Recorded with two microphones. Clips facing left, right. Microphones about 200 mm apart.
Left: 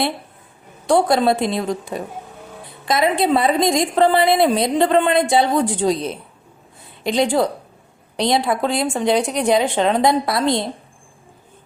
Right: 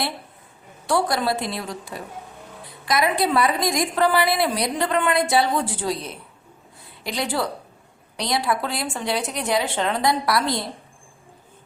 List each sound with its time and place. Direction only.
0.9 s a woman's voice: 25° left (ahead or behind)